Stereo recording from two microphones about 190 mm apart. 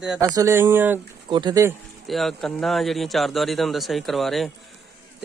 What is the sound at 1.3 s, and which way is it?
Speech, 25° right (ahead or behind).